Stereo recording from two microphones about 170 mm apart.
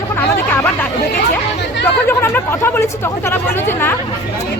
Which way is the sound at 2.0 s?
15° left (ahead or behind).